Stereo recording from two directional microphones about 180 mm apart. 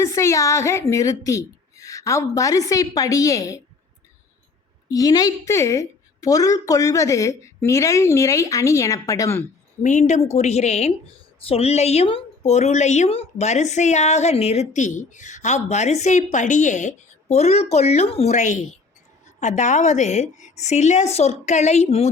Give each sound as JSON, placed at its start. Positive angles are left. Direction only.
{"t": 0.0, "sound": "a woman's voice", "side_deg": 15}
{"t": 4.9, "sound": "a woman's voice", "side_deg": 20}
{"t": 9.8, "sound": "a woman's voice", "side_deg": 45}